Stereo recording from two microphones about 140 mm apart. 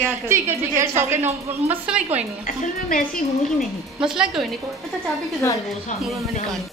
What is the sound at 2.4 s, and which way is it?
Speech, 75° left (ahead or behind).